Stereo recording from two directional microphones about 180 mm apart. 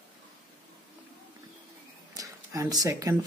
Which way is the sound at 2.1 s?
20° right (ahead or behind).